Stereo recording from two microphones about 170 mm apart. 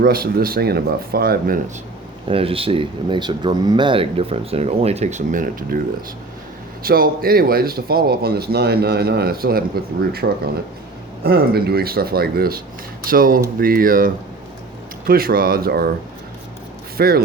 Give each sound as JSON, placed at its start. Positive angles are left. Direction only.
{"t": 0.0, "sound": "speech", "side_deg": -60}
{"t": 2.2, "sound": "speech", "side_deg": -35}
{"t": 6.8, "sound": "speech", "side_deg": -60}
{"t": 17.0, "sound": "speech", "side_deg": -65}